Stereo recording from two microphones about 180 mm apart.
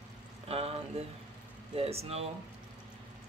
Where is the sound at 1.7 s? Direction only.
35° right (ahead or behind).